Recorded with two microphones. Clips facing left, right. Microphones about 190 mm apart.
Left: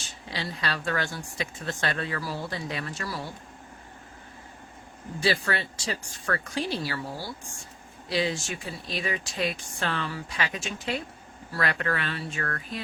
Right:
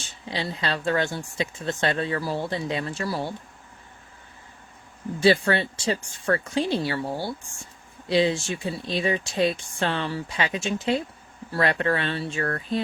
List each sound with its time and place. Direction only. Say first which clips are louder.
0.0 s speech: right 4 dB; 25° right (ahead or behind)
5.2 s speech: right 7 dB; 25° right (ahead or behind)